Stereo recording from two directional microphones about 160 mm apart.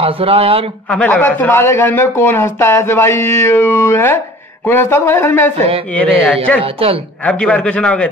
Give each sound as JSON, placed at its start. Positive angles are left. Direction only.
{"t": 0.0, "sound": "a man's voice", "side_deg": -35}
{"t": 0.8, "sound": "speech", "side_deg": 5}
{"t": 6.6, "sound": "a man's voice", "side_deg": -35}
{"t": 7.2, "sound": "speech", "side_deg": 5}